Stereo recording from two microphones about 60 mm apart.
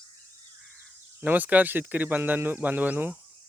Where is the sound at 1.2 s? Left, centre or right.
Right.